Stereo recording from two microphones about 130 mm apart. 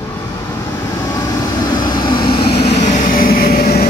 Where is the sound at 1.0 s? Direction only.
30° left (ahead or behind); by 3.4 s 90° left.